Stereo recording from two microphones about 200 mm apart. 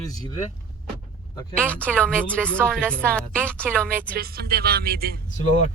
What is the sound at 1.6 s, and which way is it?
A woman's voice, 5° left (ahead or behind).